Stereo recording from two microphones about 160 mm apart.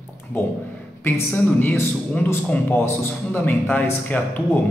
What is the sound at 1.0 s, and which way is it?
A man's voice, 10° left (ahead or behind).